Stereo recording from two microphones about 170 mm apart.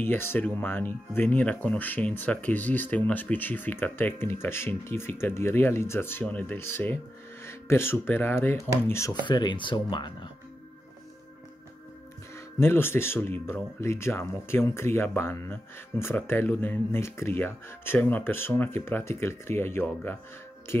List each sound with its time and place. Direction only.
0.0 s speech: 15° left (ahead or behind)
12.5 s speech: 15° left (ahead or behind)